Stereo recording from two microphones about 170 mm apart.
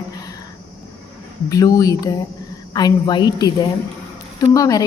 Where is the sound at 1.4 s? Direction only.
20° left (ahead or behind).